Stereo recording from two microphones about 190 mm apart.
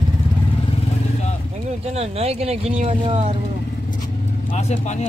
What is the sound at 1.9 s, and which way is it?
Speech, 35° right (ahead or behind).